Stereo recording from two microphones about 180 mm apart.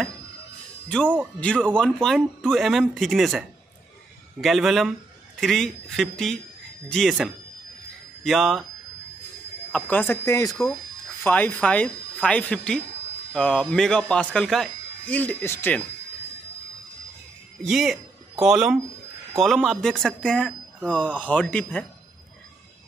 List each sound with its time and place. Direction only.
1.0 s speech: 10° right (ahead or behind)
1.4 s speech: 5° left (ahead or behind)
9.7 s speech: 5° left (ahead or behind)
17.6 s speech: centre (ahead or behind)